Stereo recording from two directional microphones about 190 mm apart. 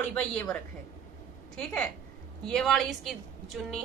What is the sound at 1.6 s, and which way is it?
A woman's voice, 5° left (ahead or behind).